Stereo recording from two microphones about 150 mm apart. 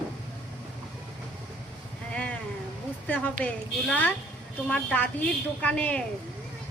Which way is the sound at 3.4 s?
10° left (ahead or behind).